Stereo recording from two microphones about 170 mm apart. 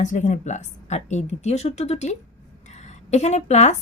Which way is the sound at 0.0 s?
45° left (ahead or behind).